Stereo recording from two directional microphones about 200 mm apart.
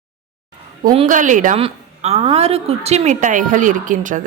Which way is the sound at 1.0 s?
40° right (ahead or behind).